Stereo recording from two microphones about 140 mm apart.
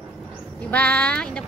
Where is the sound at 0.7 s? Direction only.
10° left (ahead or behind).